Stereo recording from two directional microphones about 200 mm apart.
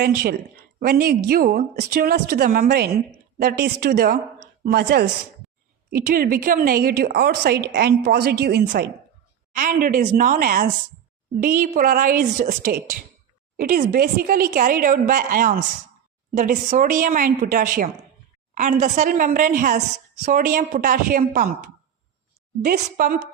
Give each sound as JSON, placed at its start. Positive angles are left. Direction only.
{"t": 0.0, "sound": "a woman's voice", "side_deg": -50}